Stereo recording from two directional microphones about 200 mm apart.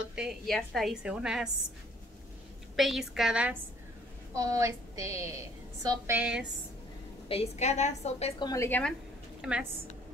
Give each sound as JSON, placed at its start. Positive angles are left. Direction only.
{"t": 0.0, "sound": "a woman's voice", "side_deg": -5}
{"t": 2.7, "sound": "a woman's voice", "side_deg": 0}
{"t": 4.4, "sound": "a woman's voice", "side_deg": -15}
{"t": 7.2, "sound": "a woman's voice", "side_deg": 30}
{"t": 8.4, "sound": "a woman's voice", "side_deg": 15}
{"t": 9.4, "sound": "a woman's voice", "side_deg": -5}